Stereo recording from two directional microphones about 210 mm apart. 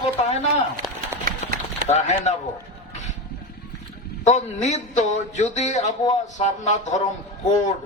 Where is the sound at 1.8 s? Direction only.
35° left (ahead or behind).